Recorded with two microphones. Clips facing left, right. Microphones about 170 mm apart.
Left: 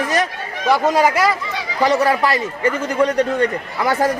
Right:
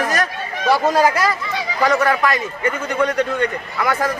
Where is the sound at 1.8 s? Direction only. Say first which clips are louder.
Left 1 dB; 30° left (ahead or behind).